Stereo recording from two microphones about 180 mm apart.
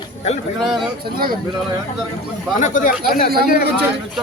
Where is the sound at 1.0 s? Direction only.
55° right (ahead or behind).